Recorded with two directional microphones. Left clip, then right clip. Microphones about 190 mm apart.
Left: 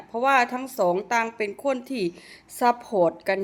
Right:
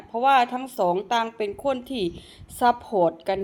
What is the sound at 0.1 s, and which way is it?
A woman's voice, 15° left (ahead or behind).